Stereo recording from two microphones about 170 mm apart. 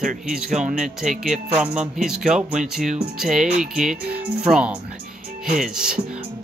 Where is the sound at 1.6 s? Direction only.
5° right (ahead or behind).